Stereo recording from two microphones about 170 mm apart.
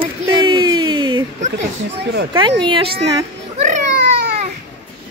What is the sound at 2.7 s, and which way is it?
Speech, 30° right (ahead or behind).